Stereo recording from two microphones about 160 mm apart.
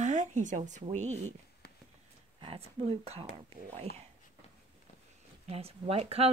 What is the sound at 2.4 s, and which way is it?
Speech, 35° right (ahead or behind).